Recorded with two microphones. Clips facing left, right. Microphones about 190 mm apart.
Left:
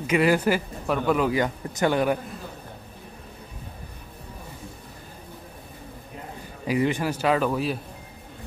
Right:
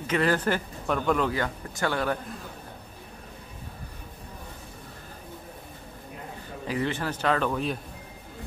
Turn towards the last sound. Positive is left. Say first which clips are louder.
# left 3 dB
turn(degrees=5)  # may be behind; listen again after turning